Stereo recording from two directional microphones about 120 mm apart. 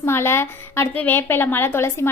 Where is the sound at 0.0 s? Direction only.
20° left (ahead or behind).